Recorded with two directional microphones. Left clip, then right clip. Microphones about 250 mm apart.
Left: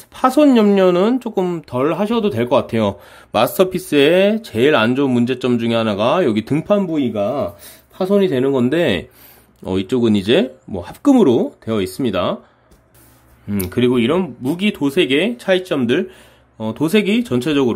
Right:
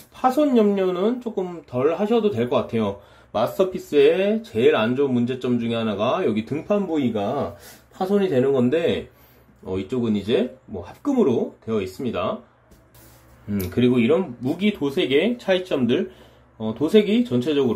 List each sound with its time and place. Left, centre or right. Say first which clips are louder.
0.1 s speech: left 6 dB; left
13.5 s speech: left 4 dB; left